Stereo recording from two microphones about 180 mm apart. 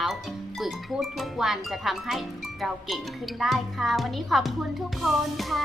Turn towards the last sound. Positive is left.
turn(degrees=0)  # may be behind; listen again after turning